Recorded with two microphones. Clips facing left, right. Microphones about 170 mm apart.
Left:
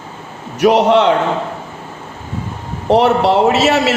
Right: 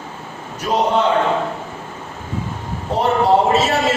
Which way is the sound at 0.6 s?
80° left.